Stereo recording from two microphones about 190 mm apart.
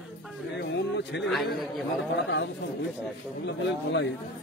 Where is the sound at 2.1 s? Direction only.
75° left (ahead or behind).